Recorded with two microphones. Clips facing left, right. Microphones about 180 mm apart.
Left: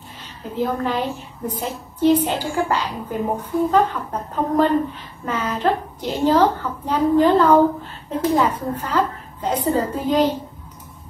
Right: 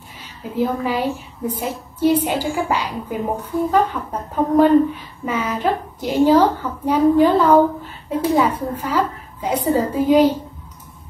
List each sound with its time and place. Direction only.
0.6 s a woman's voice: 10° right (ahead or behind)